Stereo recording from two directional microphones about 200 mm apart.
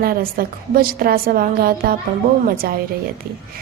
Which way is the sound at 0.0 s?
50° right (ahead or behind).